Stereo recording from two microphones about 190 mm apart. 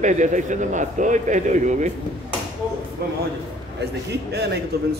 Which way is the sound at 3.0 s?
55° right (ahead or behind).